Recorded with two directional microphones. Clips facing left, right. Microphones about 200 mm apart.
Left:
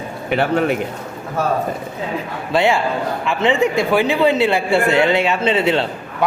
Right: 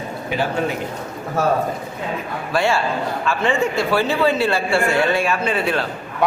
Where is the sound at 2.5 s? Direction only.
20° left (ahead or behind).